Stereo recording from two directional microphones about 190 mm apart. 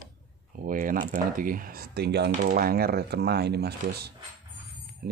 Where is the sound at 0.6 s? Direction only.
45° right (ahead or behind).